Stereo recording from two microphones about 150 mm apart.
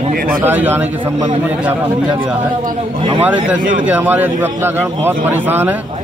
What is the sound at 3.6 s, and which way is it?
Speech, 60° right (ahead or behind).